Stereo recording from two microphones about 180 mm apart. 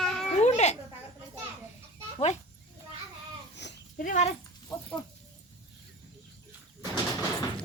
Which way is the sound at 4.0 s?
40° left (ahead or behind).